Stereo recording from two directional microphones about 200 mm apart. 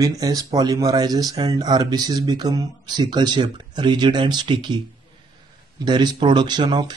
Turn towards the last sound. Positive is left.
turn(degrees=-20)  # may be behind; listen again after turning